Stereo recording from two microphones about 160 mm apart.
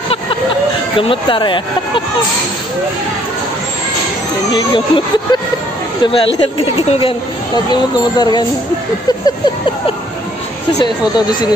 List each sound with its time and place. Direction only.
0.9 s speech: 35° left (ahead or behind)
4.6 s speech: 30° left (ahead or behind)